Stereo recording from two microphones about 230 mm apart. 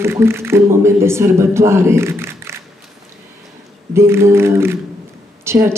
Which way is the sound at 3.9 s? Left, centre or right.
Centre.